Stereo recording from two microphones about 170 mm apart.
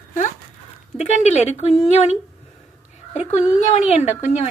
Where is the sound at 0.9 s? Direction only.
40° left (ahead or behind).